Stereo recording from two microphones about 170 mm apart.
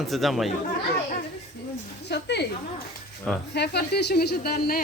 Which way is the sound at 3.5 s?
80° left.